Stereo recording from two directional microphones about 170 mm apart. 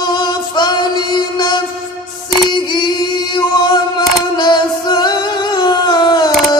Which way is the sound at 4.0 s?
25° left (ahead or behind).